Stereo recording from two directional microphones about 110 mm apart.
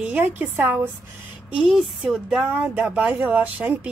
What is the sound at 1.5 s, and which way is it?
Speech, 5° right (ahead or behind).